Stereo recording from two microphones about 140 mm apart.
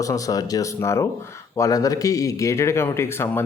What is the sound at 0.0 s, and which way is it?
A man's voice, 25° left (ahead or behind).